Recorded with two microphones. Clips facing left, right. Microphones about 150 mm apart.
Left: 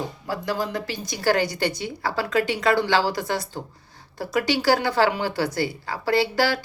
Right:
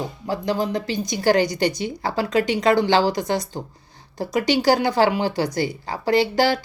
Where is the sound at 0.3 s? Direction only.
20° right (ahead or behind).